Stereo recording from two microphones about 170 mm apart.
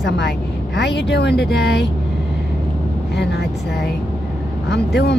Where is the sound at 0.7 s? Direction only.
90° left.